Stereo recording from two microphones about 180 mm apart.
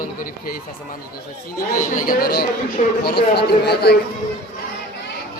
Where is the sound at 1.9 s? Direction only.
50° left (ahead or behind).